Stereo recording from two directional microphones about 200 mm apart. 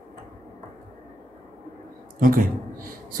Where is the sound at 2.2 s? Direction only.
45° right (ahead or behind).